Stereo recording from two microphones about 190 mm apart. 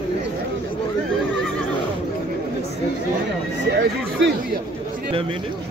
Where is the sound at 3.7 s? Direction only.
60° right (ahead or behind).